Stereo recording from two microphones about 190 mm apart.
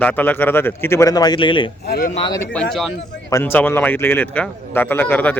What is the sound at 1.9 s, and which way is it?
Speech, 50° left (ahead or behind).